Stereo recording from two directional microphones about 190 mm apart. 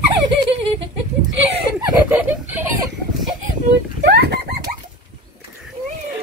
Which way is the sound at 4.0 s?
60° right (ahead or behind).